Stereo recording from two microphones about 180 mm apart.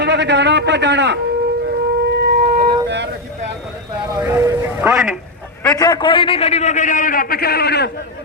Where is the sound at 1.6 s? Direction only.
80° right.